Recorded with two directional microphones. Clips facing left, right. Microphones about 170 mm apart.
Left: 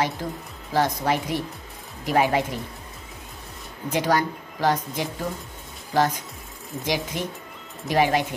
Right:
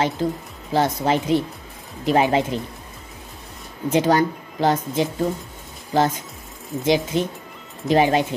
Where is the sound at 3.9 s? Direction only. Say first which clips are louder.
Right 5 dB; 25° right (ahead or behind).